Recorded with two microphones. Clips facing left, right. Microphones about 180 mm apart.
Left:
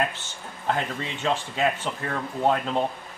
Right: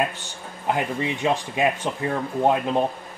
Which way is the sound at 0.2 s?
15° right (ahead or behind).